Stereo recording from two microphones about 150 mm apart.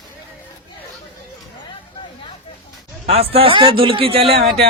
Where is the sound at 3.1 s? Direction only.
40° right (ahead or behind).